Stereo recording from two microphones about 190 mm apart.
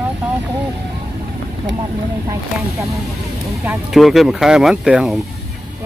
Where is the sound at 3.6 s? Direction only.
Centre (ahead or behind).